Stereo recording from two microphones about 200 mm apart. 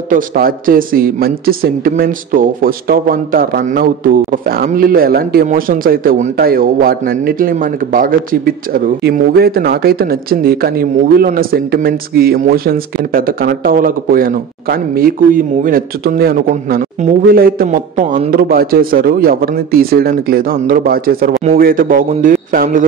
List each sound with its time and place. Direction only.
0.1 s speech: 45° right (ahead or behind)